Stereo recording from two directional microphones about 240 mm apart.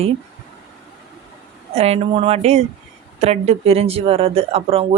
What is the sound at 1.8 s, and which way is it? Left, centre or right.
Speech, right.